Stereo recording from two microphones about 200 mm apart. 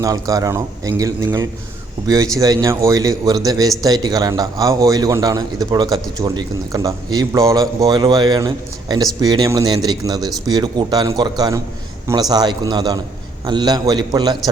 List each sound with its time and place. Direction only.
0.0 s a man's voice: 15° right (ahead or behind)